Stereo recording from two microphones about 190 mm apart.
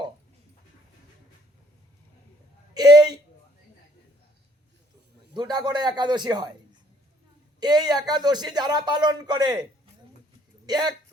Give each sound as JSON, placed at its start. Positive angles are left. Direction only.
{"t": 2.7, "sound": "a sound", "side_deg": -20}
{"t": 5.3, "sound": "speech", "side_deg": -20}
{"t": 7.6, "sound": "speech", "side_deg": -20}
{"t": 10.7, "sound": "speech", "side_deg": -20}